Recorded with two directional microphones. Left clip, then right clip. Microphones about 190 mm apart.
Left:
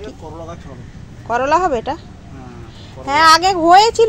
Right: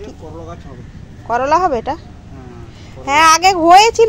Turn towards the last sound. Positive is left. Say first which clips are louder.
# right 2 dB
turn(degrees=-20)  # may be behind; listen again after turning